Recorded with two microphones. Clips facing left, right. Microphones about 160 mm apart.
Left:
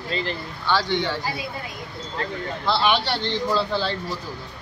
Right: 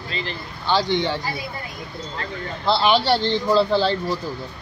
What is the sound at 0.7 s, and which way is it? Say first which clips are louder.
Speech: right 2 dB; 20° right (ahead or behind).